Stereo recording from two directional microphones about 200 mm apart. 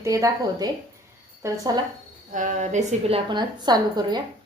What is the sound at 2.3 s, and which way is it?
Speech, 40° right (ahead or behind).